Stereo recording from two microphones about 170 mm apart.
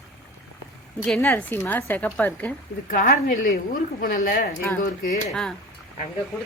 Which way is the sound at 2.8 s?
50° left (ahead or behind).